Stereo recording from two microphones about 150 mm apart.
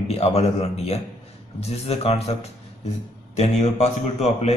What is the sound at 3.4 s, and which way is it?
A man's voice, 45° left (ahead or behind).